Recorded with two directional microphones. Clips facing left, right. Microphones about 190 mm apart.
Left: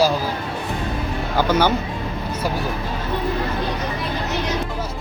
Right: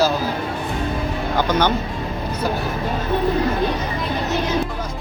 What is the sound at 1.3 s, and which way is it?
Speech, 10° left (ahead or behind).